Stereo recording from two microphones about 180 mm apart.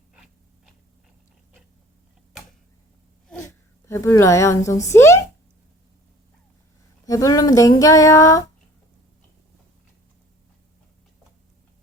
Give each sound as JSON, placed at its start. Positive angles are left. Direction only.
{"t": 0.1, "sound": "biting", "side_deg": -5}
{"t": 3.8, "sound": "a woman's voice", "side_deg": 15}
{"t": 7.0, "sound": "speech", "side_deg": 20}